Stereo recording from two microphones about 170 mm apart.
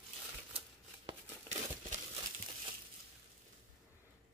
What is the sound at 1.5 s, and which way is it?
Crumpling, 45° right (ahead or behind).